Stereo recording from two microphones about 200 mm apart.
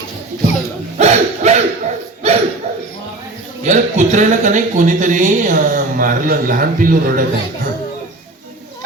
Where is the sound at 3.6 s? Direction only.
35° right (ahead or behind).